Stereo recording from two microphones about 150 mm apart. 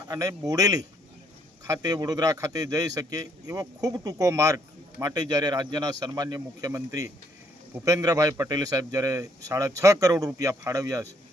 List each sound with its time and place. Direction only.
0.1 s a man's voice: 25° right (ahead or behind)